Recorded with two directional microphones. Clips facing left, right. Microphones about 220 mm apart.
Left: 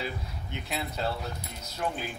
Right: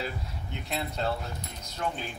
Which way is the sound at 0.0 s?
Centre (ahead or behind).